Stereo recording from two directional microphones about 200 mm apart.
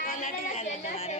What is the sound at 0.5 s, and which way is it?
Speech, 35° left (ahead or behind).